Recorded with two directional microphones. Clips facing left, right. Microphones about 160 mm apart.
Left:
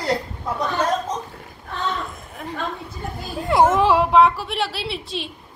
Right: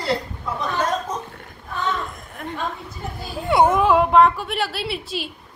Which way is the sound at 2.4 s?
Centre (ahead or behind).